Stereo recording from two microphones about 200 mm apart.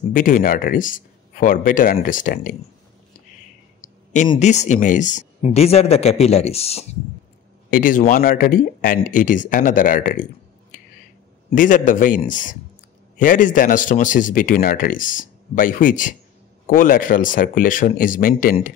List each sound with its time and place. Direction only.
0.1 s speech: 40° left (ahead or behind)
4.4 s speech: 35° left (ahead or behind)
7.7 s speech: 45° left (ahead or behind)
10.7 s finger snapping: 40° left (ahead or behind)
11.5 s speech: 40° left (ahead or behind)